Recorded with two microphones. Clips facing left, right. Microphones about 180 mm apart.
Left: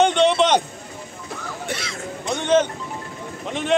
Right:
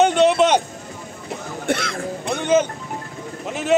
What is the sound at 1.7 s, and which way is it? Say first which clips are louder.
Speech: right 9 dB; 55° right (ahead or behind).